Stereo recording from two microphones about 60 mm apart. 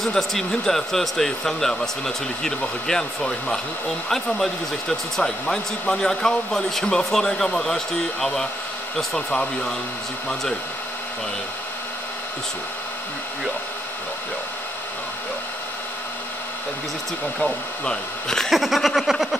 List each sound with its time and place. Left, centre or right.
0.1 s speech: centre
9.3 s speech: left
17.4 s speech: centre
18.5 s a sound: centre